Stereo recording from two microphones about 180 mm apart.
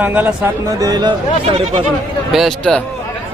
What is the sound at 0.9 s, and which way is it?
Speech, 25° right (ahead or behind).